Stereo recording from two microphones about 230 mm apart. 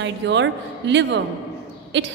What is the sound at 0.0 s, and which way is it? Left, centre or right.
A woman's voice, right.